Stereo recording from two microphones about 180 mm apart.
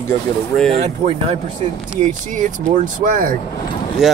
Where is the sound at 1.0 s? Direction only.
25° right (ahead or behind).